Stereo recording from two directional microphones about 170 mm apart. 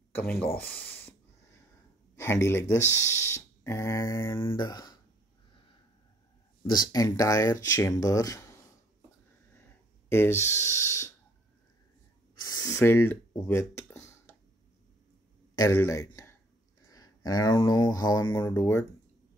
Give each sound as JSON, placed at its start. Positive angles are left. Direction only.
{"t": 0.1, "sound": "a sound", "side_deg": 10}
{"t": 2.1, "sound": "speech", "side_deg": 15}
{"t": 6.6, "sound": "speech", "side_deg": 25}
{"t": 10.0, "sound": "speech", "side_deg": 15}
{"t": 12.4, "sound": "a sound", "side_deg": 20}
{"t": 15.5, "sound": "speech", "side_deg": 15}